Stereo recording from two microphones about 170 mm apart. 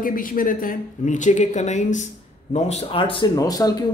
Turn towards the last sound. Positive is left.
turn(degrees=20)  # may be behind; listen again after turning